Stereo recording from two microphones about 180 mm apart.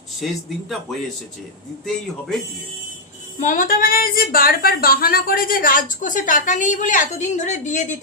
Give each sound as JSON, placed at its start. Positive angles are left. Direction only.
{"t": 3.4, "sound": "a woman's voice", "side_deg": 45}